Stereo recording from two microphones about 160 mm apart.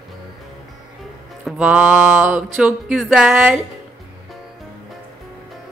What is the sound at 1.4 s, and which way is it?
Music, 5° right (ahead or behind).